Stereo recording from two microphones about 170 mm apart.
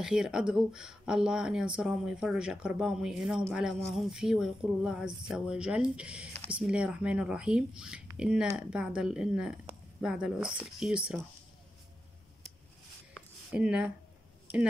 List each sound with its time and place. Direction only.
0.0 s speech: 5° right (ahead or behind)
13.5 s speech: 5° right (ahead or behind)